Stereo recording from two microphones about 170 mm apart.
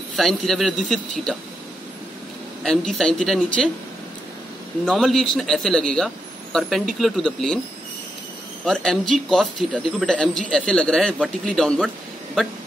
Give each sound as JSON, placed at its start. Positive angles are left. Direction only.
{"t": 0.1, "sound": "speech", "side_deg": 0}
{"t": 2.6, "sound": "speech", "side_deg": 5}
{"t": 4.8, "sound": "speech", "side_deg": 0}
{"t": 8.6, "sound": "speech", "side_deg": 5}